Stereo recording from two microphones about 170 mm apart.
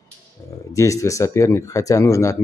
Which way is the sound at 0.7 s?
20° left (ahead or behind).